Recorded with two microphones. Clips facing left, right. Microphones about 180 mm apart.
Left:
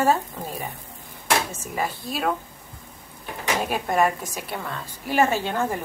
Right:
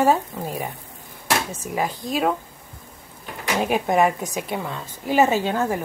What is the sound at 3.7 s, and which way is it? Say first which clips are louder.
Speech: right 4 dB; 15° right (ahead or behind).